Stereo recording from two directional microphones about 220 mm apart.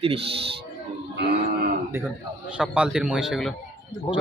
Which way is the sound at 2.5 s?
5° right (ahead or behind).